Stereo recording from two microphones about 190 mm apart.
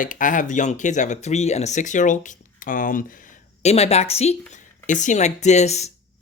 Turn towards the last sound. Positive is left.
turn(degrees=35)  # may be behind; listen again after turning